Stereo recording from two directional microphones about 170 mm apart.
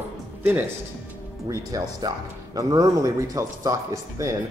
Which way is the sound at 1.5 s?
20° right (ahead or behind).